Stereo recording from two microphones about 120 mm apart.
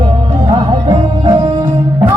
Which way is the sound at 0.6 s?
55° right (ahead or behind).